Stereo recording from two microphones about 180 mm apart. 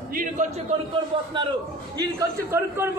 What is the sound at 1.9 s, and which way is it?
Speech, 20° right (ahead or behind).